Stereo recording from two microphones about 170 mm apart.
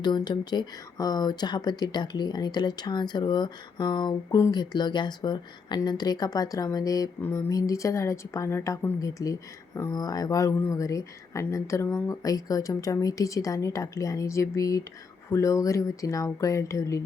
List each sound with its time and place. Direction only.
0.0 s speech: 25° left (ahead or behind)